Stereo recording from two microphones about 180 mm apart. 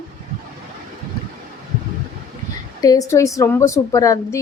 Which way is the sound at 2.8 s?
20° left (ahead or behind).